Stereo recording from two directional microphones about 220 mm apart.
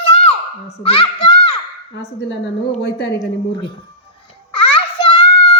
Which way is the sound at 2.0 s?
50° left (ahead or behind).